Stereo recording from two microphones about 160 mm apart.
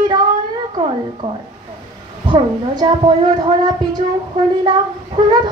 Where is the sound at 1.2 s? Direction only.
40° right (ahead or behind).